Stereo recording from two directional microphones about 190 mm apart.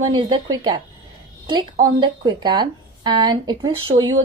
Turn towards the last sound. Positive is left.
turn(degrees=-25)  # may be behind; listen again after turning